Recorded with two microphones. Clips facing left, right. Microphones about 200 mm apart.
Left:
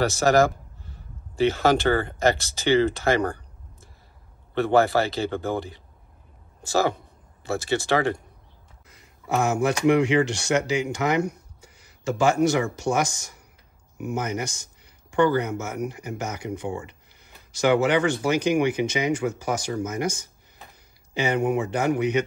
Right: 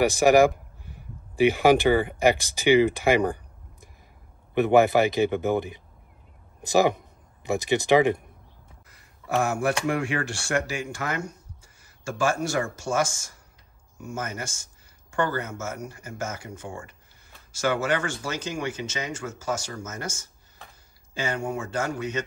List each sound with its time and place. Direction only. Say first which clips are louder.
0.0 s speech: right 2 dB; 15° right (ahead or behind)
8.8 s speech: left 2 dB; 20° left (ahead or behind)
11.6 s a sound: left 7 dB; 20° left (ahead or behind)
12.4 s a man's voice: left 5 dB; 20° left (ahead or behind)